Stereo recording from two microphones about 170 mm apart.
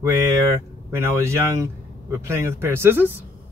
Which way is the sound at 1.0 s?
15° right (ahead or behind).